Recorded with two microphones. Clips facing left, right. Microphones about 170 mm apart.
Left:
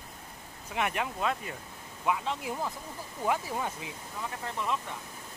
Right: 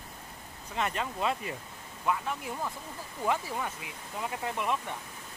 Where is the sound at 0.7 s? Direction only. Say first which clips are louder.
Left 1 dB; 10° left (ahead or behind).